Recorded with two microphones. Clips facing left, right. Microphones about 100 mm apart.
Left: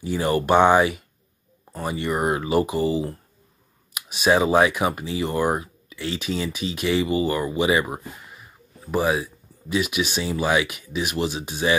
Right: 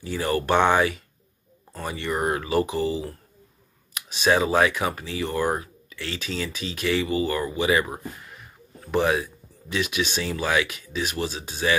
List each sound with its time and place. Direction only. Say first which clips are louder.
0.0 s speech: left 3 dB; 15° left (ahead or behind)